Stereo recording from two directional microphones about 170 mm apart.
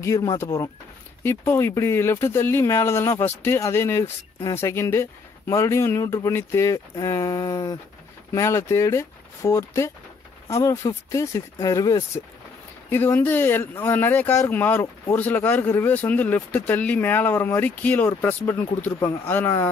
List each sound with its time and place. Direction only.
0.0 s speech: 20° left (ahead or behind)